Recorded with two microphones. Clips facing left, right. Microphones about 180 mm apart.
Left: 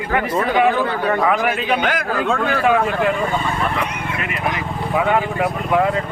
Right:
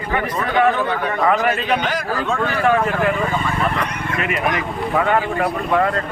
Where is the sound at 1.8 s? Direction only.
55° left (ahead or behind).